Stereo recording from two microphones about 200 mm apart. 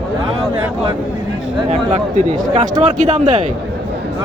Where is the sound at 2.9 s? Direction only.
35° right (ahead or behind).